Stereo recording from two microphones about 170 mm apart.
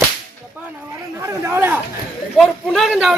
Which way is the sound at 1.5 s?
10° right (ahead or behind).